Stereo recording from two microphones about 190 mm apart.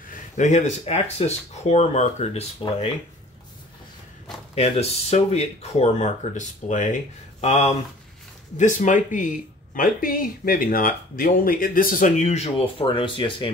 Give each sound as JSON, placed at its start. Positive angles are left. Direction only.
{"t": 0.0, "sound": "speech", "side_deg": 40}
{"t": 4.6, "sound": "speech", "side_deg": 35}